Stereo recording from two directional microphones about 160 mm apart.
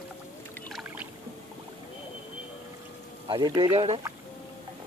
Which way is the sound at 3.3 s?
30° right (ahead or behind).